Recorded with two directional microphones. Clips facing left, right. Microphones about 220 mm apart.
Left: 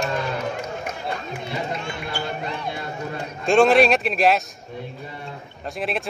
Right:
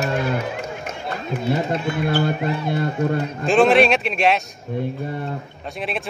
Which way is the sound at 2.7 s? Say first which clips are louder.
Right 9 dB; 50° right (ahead or behind).